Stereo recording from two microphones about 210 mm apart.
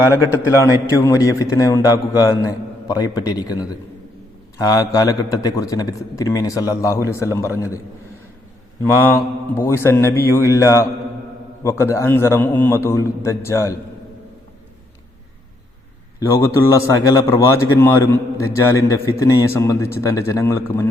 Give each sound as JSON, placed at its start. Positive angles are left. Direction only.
{"t": 0.1, "sound": "a man's voice", "side_deg": 15}
{"t": 8.8, "sound": "a man's voice", "side_deg": 10}
{"t": 16.2, "sound": "a man's voice", "side_deg": 15}